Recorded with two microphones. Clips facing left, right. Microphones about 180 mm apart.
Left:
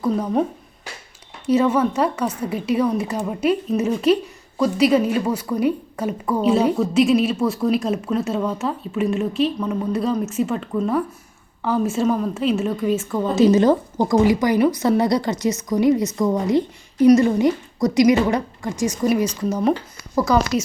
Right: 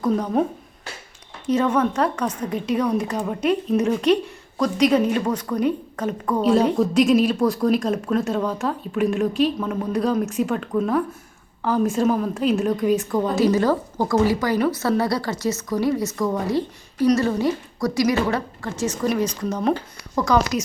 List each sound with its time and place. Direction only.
0.0 s a woman's voice: 5° left (ahead or behind)
1.5 s a woman's voice: 10° left (ahead or behind)
13.2 s a woman's voice: 20° left (ahead or behind)